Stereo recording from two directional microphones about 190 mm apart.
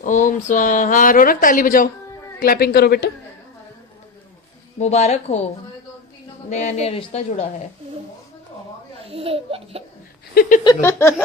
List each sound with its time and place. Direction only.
0.0 s a man's voice: 40° left (ahead or behind)
4.8 s speech: 35° left (ahead or behind)
6.5 s speech: 40° left (ahead or behind)
9.0 s speech: 30° right (ahead or behind)
10.8 s a sound: 10° left (ahead or behind)